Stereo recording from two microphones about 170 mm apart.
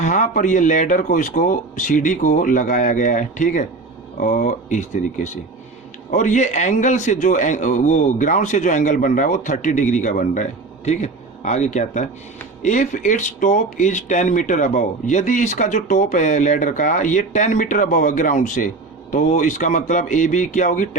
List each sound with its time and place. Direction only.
0.0 s speech: 45° left (ahead or behind)